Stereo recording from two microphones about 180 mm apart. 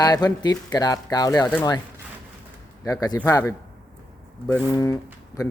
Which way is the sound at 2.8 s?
20° left (ahead or behind).